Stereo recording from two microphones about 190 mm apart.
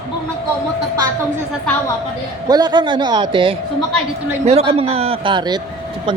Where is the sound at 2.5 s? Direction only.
20° right (ahead or behind).